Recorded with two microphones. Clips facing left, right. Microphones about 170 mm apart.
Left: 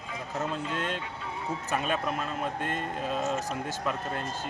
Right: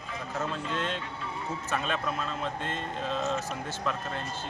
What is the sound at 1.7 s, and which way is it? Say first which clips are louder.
Speech: left 2 dB; 10° left (ahead or behind).